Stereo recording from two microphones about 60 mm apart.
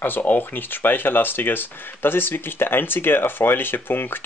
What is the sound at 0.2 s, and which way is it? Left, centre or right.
Speech, left.